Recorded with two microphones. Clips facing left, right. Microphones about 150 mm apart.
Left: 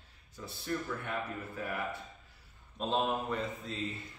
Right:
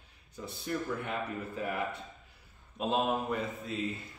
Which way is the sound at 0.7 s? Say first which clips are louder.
Right 2 dB; 20° right (ahead or behind).